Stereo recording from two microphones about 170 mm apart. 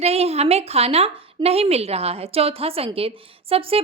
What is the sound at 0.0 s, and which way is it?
Speech, 35° right (ahead or behind).